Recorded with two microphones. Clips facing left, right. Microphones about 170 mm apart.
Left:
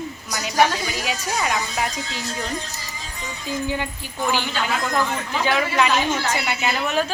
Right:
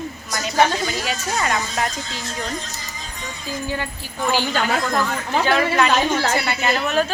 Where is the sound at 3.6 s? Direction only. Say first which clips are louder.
Even; 15° left (ahead or behind).